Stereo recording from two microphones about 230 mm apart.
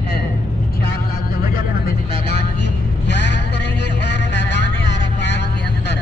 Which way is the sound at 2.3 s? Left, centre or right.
Left.